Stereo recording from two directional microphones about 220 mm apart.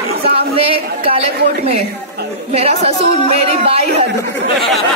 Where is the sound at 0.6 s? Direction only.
25° right (ahead or behind).